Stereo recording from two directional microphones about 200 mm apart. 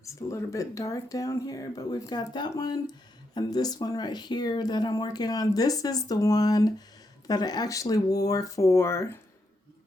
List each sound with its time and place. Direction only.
0.0 s speech: 15° left (ahead or behind)